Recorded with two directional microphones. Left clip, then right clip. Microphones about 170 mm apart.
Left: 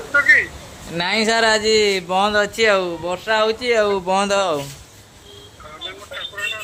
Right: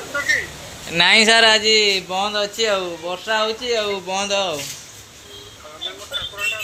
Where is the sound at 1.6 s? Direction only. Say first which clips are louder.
Even; 35° left (ahead or behind).